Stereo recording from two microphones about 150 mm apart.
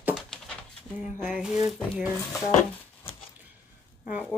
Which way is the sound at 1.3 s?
5° right (ahead or behind).